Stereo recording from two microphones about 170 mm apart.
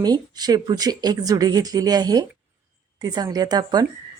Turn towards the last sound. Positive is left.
turn(degrees=-25)  # may be behind; listen again after turning